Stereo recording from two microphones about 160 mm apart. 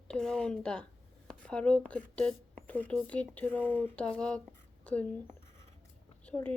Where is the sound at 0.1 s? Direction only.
5° left (ahead or behind).